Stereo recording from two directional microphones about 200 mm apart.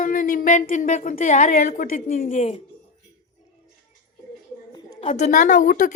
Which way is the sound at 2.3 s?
30° left (ahead or behind).